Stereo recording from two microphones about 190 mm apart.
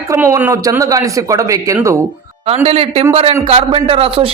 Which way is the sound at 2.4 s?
30° right (ahead or behind).